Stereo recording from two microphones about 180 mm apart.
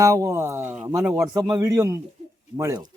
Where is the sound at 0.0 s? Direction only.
15° right (ahead or behind).